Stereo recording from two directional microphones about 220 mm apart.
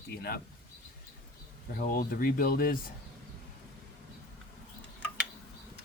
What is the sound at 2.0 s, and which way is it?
Speech, 40° left (ahead or behind).